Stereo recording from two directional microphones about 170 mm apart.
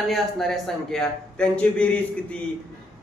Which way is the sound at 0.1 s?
Centre (ahead or behind).